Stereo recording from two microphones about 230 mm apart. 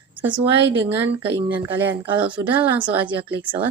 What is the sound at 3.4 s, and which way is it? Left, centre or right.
Speech, right.